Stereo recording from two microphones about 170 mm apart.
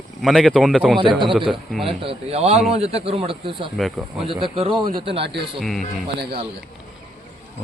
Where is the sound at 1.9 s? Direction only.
35° right (ahead or behind).